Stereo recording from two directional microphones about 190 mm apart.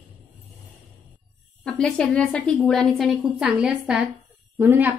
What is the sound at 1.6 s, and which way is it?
A woman's voice, 5° left (ahead or behind).